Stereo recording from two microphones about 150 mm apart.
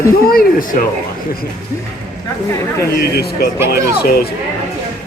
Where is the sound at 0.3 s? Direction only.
70° left (ahead or behind).